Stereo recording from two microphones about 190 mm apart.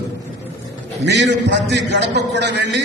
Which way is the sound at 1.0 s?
65° right (ahead or behind).